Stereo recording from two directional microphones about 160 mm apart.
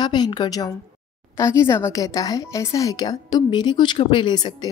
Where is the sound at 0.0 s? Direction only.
25° left (ahead or behind).